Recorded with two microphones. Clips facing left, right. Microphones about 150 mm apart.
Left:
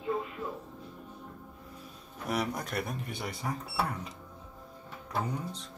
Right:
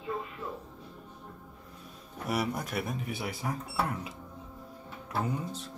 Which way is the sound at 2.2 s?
5° right (ahead or behind).